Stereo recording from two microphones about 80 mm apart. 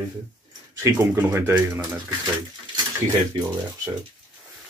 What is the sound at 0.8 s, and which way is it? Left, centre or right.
Speech, right.